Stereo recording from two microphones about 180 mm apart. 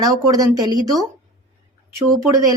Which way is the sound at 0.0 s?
20° right (ahead or behind).